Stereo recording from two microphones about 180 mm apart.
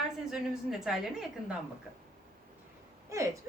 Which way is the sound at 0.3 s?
5° right (ahead or behind).